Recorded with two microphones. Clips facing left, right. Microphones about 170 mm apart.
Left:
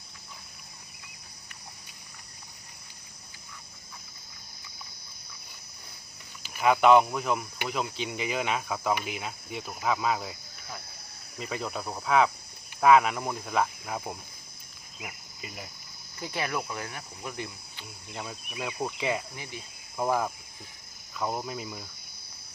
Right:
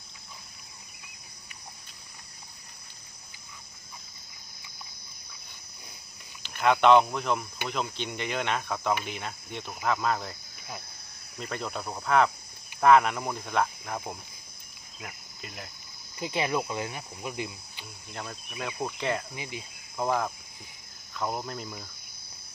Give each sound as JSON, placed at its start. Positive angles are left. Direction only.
{"t": 6.4, "sound": "speech", "side_deg": 5}
{"t": 11.3, "sound": "speech", "side_deg": 5}
{"t": 16.1, "sound": "speech", "side_deg": -15}
{"t": 18.1, "sound": "speech", "side_deg": 10}
{"t": 19.4, "sound": "speech", "side_deg": -15}
{"t": 20.0, "sound": "speech", "side_deg": 5}